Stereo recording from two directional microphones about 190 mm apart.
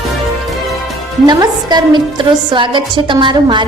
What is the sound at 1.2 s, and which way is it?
A woman's voice, 20° right (ahead or behind).